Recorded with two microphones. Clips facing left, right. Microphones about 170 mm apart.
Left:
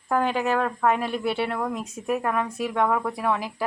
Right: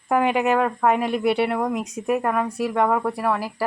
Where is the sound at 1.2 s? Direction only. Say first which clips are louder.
Right 7 dB; 70° right (ahead or behind).